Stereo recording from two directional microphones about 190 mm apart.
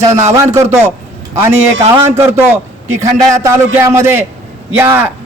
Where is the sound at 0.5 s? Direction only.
15° right (ahead or behind).